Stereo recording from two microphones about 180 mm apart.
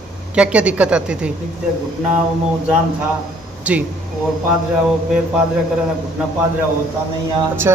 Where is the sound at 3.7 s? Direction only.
5° right (ahead or behind).